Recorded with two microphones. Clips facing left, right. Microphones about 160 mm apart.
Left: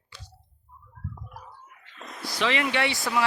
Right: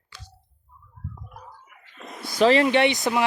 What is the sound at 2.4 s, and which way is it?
Speech, 40° right (ahead or behind).